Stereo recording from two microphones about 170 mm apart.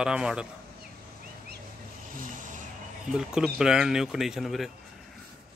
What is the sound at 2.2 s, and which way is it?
Vehicle, 50° right (ahead or behind).